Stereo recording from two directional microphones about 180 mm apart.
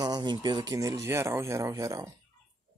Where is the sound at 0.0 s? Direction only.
25° right (ahead or behind).